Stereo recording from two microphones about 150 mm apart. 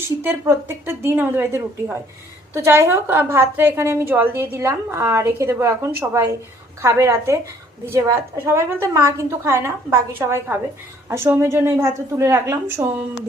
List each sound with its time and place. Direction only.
0.2 s a woman's voice: 15° right (ahead or behind)